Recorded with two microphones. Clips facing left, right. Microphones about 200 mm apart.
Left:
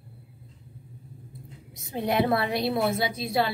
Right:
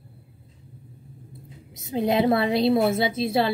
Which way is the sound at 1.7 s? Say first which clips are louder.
Right 3 dB; 20° right (ahead or behind).